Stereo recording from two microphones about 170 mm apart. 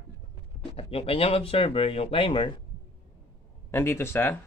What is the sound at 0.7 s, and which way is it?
Speech, 35° left (ahead or behind).